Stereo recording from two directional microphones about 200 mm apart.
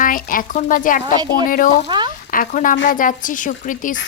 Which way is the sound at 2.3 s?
45° left (ahead or behind).